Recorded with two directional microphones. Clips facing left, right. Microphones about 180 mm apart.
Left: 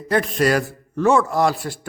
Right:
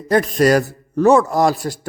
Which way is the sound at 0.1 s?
40° right (ahead or behind).